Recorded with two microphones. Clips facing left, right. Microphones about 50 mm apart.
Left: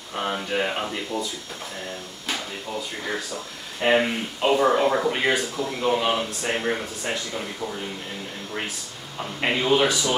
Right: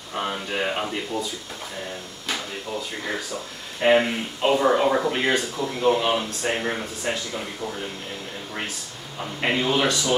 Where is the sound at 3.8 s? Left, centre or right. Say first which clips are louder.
Right 2 dB; centre.